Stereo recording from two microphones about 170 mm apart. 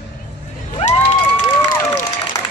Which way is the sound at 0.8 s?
35° left (ahead or behind).